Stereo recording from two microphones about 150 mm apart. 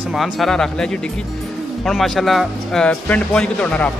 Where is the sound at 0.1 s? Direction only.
Centre (ahead or behind).